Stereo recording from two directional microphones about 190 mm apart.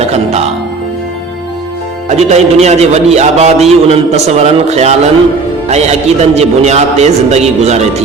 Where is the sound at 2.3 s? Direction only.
35° right (ahead or behind).